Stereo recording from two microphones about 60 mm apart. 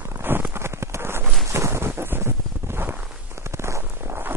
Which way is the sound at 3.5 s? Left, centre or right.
Right.